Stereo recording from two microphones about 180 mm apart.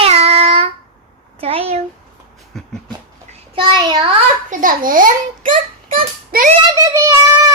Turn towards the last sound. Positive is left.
turn(degrees=-15)  # may be behind; listen again after turning